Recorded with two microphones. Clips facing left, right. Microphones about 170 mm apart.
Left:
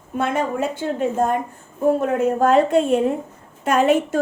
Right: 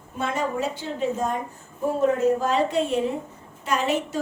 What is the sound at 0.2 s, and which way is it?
A woman's voice, 55° left (ahead or behind).